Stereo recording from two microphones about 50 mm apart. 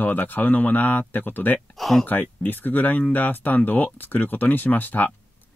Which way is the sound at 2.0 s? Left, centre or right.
Left.